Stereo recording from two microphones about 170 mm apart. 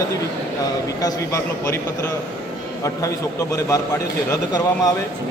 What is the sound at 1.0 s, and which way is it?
Speech, 20° left (ahead or behind).